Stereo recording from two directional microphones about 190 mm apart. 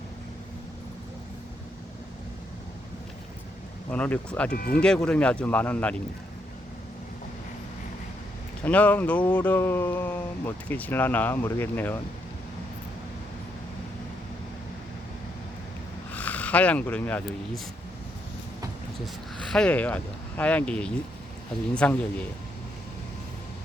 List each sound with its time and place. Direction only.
3.9 s speech: 5° left (ahead or behind)
4.5 s speech: 55° left (ahead or behind)
4.8 s speech: 5° left (ahead or behind)
8.6 s speech: 10° left (ahead or behind)
16.1 s speech: 10° left (ahead or behind)
19.0 s speech: centre (ahead or behind)